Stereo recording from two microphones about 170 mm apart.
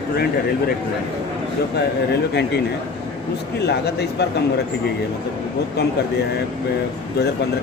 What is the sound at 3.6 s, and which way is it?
Speech, 75° left (ahead or behind).